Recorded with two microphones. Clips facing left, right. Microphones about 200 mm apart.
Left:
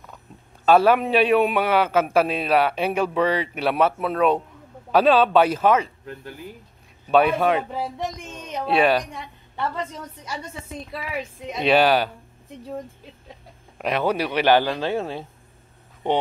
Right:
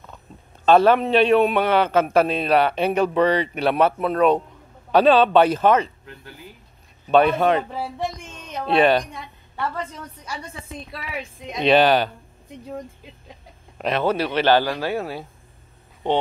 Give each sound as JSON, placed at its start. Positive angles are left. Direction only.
{"t": 0.7, "sound": "a man's voice", "side_deg": 5}
{"t": 7.1, "sound": "a man's voice", "side_deg": 5}
{"t": 10.9, "sound": "speech", "side_deg": 10}
{"t": 13.7, "sound": "speech", "side_deg": 10}